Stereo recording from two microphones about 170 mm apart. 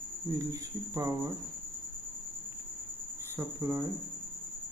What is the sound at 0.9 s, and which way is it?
Cricket, 15° right (ahead or behind).